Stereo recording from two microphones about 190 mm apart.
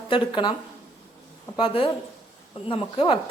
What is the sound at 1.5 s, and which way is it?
Speech, 25° left (ahead or behind).